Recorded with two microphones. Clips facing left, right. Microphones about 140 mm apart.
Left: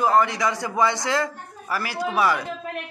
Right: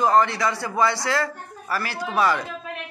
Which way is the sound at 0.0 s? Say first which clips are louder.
Right 1 dB; 10° left (ahead or behind).